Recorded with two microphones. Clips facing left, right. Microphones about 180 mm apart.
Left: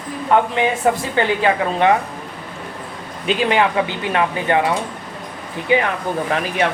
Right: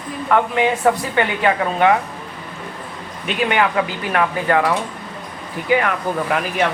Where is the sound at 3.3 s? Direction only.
30° left (ahead or behind).